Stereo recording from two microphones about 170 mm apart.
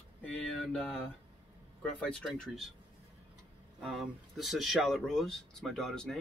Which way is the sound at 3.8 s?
Centre (ahead or behind).